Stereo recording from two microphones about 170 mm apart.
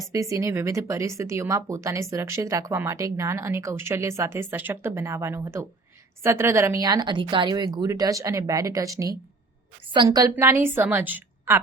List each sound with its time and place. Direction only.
0.1 s speech: 20° right (ahead or behind)